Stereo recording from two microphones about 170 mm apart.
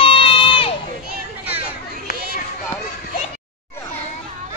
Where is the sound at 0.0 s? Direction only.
30° left (ahead or behind).